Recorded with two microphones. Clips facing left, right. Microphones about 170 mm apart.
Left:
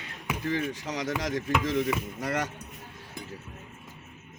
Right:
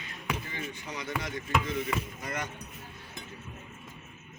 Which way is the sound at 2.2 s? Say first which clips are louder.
Left 6 dB; 85° left.